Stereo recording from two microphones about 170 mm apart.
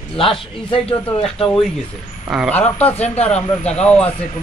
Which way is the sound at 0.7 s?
35° left (ahead or behind).